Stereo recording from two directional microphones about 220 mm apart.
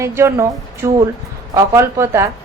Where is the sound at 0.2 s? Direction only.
15° right (ahead or behind).